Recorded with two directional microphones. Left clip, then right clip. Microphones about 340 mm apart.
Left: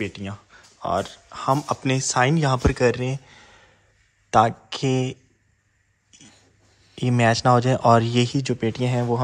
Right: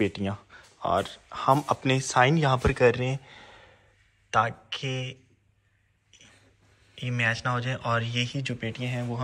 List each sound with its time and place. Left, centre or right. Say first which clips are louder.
0.0 s speech: right 2 dB; centre
7.0 s speech: left 7 dB; centre